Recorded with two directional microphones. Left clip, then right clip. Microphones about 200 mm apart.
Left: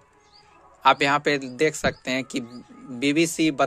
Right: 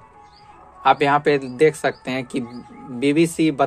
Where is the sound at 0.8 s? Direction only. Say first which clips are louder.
Right 3 dB; 30° left (ahead or behind).